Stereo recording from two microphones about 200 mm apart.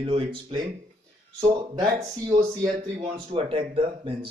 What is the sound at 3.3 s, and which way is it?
A man's voice, 30° right (ahead or behind).